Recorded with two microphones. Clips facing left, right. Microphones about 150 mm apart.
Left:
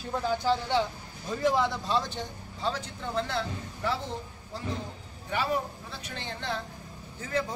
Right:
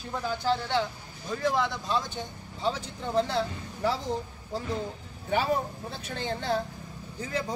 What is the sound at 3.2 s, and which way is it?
Speech, 35° right (ahead or behind).